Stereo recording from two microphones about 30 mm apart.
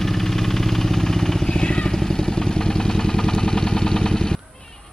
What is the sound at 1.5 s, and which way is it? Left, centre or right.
Vehicle, left.